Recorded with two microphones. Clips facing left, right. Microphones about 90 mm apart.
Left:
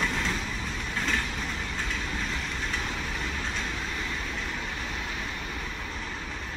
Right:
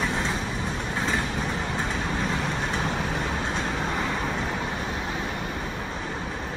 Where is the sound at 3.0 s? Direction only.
50° right (ahead or behind).